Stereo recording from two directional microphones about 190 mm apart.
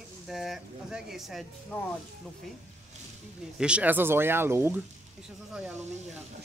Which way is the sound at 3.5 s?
5° right (ahead or behind).